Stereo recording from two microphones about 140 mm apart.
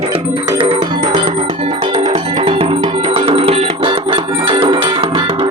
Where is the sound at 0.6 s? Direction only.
45° right (ahead or behind).